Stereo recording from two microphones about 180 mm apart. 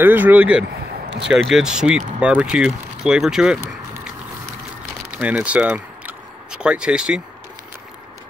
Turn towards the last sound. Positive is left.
turn(degrees=-5)  # may be behind; listen again after turning